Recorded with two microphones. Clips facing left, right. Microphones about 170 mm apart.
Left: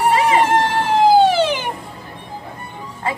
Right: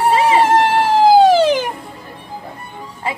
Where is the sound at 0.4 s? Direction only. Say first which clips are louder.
Right 3 dB; 35° right (ahead or behind).